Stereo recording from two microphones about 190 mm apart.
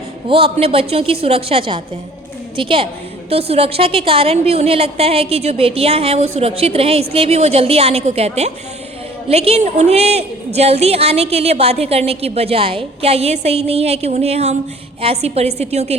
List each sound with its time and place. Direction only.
0.3 s a woman's voice: 30° right (ahead or behind)